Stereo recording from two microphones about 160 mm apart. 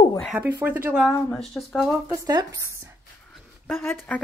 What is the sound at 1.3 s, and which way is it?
Speech, centre (ahead or behind).